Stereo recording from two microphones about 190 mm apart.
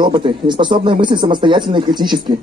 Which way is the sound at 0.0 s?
25° right (ahead or behind).